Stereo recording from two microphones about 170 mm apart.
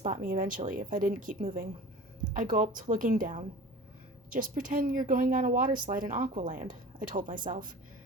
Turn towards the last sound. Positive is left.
turn(degrees=-55)  # may be behind; listen again after turning